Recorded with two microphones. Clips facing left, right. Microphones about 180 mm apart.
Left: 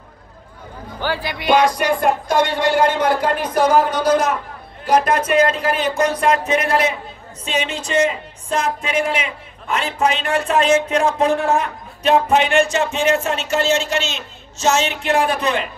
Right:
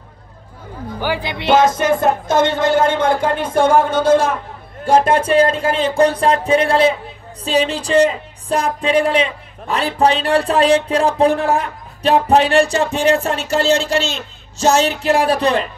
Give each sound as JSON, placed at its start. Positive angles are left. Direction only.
{"t": 1.0, "sound": "music", "side_deg": -20}
{"t": 8.8, "sound": "speech", "side_deg": -35}